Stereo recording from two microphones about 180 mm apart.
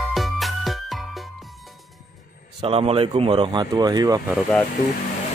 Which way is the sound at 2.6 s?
30° right (ahead or behind).